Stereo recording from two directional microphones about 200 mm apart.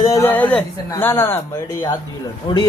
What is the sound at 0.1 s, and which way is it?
Speech, 10° left (ahead or behind).